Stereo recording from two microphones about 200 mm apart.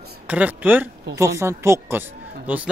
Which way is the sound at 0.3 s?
5° right (ahead or behind).